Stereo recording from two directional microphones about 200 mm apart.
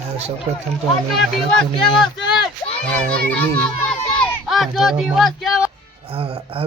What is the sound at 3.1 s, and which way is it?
A child's voice, 5° left (ahead or behind).